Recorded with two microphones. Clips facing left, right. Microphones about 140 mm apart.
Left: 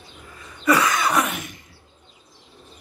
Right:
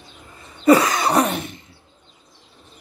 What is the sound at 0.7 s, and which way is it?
Cough, 30° right (ahead or behind).